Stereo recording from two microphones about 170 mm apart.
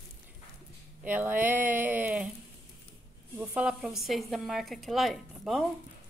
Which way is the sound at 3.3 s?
5° right (ahead or behind).